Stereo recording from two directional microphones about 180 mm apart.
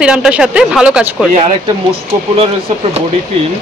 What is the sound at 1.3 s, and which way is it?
Speech, 35° right (ahead or behind).